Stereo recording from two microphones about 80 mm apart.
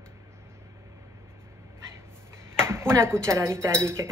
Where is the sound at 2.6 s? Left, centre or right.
Right.